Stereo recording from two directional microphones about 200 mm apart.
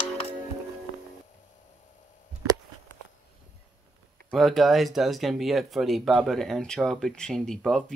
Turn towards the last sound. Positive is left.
turn(degrees=5)  # may be behind; listen again after turning